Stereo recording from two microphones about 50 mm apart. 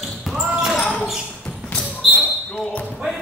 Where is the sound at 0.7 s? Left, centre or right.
Centre.